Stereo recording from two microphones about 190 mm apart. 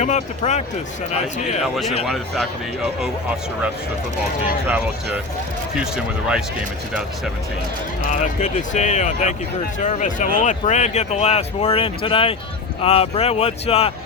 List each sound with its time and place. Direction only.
0.0 s speech: 35° left (ahead or behind)
1.7 s speech: centre (ahead or behind)
5.7 s speech: 5° right (ahead or behind)
8.0 s speech: 40° left (ahead or behind)